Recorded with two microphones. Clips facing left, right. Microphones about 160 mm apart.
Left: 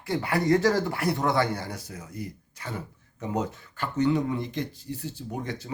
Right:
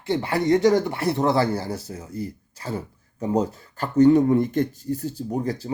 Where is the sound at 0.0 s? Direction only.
25° right (ahead or behind).